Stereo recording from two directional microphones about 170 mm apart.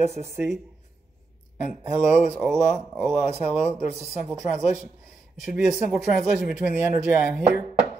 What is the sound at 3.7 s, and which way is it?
Speech, 40° right (ahead or behind).